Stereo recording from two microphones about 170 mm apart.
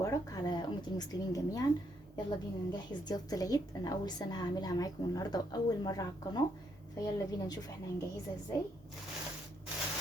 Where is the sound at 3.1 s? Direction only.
20° left (ahead or behind).